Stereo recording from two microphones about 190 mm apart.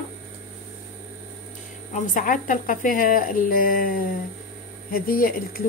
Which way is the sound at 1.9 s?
45° left (ahead or behind).